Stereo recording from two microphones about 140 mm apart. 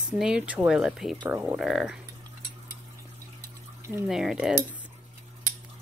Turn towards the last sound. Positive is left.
turn(degrees=-5)  # may be behind; listen again after turning